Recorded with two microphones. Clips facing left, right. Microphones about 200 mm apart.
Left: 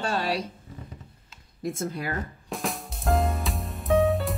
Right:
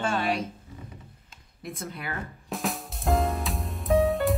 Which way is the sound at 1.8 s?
35° left (ahead or behind).